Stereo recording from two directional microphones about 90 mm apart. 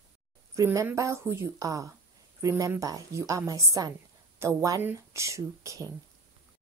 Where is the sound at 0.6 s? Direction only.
35° right (ahead or behind).